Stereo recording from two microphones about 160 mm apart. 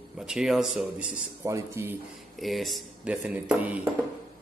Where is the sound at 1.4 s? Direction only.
15° right (ahead or behind).